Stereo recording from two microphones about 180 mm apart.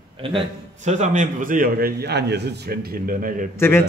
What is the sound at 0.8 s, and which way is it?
A man's voice, 40° right (ahead or behind).